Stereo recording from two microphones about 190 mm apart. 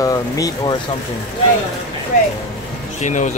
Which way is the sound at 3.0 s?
40° left (ahead or behind).